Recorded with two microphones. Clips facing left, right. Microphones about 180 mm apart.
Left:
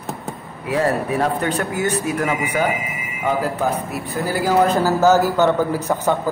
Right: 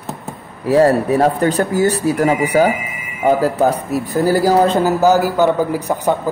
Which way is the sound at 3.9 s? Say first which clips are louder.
Right 8 dB; 40° right (ahead or behind).